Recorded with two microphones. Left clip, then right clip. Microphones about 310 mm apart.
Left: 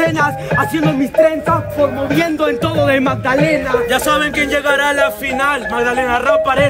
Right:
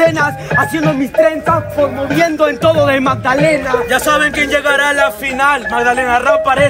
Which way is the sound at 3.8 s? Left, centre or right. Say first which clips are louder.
Right 2 dB; centre.